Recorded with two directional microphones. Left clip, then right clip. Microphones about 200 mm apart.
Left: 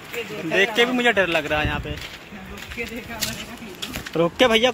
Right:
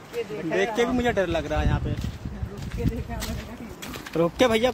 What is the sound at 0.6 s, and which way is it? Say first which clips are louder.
Speech: left 5 dB; centre (ahead or behind).